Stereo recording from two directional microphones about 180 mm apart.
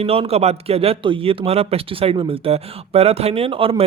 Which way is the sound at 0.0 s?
35° right (ahead or behind).